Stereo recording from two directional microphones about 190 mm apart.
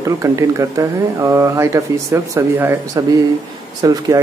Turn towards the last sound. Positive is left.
turn(degrees=-20)  # may be behind; listen again after turning